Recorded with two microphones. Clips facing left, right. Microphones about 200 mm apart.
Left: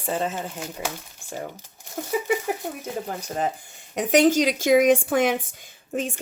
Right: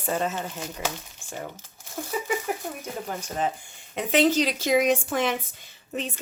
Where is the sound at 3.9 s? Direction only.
45° left (ahead or behind).